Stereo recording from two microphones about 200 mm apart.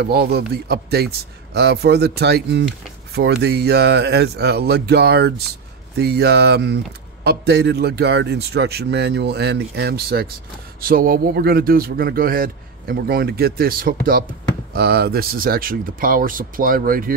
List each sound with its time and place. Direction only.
0.0 s a man's voice: 55° right (ahead or behind)